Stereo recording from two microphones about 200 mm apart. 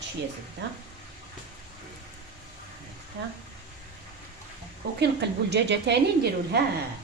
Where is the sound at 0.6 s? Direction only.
60° right (ahead or behind).